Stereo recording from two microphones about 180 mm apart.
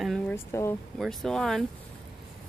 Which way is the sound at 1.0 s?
Centre (ahead or behind).